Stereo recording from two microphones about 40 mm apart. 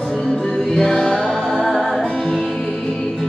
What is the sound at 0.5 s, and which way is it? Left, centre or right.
Music, centre.